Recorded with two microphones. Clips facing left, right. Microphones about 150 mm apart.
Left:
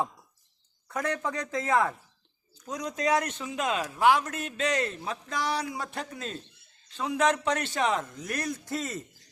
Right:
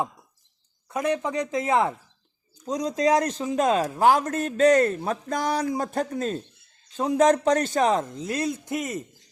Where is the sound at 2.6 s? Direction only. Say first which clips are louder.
Right 7 dB; 35° right (ahead or behind).